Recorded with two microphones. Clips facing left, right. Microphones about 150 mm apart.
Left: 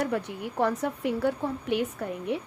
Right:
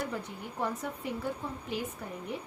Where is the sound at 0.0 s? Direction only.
70° left (ahead or behind).